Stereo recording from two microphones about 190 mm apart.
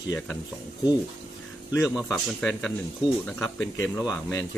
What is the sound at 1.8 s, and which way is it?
Speech, centre (ahead or behind).